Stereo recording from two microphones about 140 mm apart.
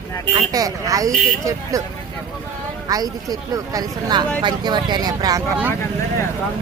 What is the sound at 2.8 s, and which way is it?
Speech, 25° right (ahead or behind).